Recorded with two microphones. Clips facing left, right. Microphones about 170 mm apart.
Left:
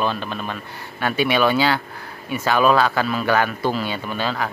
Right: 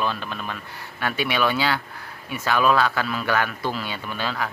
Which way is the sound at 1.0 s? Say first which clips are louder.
Left 5 dB; centre (ahead or behind).